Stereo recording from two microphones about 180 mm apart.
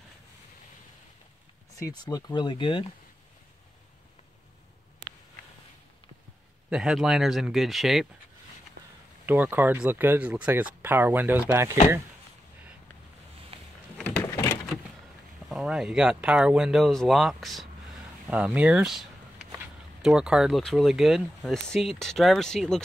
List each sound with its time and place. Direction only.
2.0 s speech: 20° left (ahead or behind)
6.7 s speech: 5° right (ahead or behind)
9.2 s speech: 10° right (ahead or behind)
13.9 s door: 10° left (ahead or behind)
15.4 s speech: centre (ahead or behind)